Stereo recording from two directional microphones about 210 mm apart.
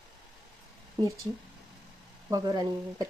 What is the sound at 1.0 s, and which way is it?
Speech, 20° right (ahead or behind).